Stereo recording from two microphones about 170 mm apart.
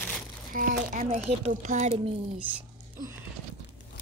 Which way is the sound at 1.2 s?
40° right (ahead or behind).